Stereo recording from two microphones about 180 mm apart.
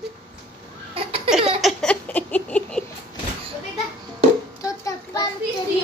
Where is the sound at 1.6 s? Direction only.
5° left (ahead or behind).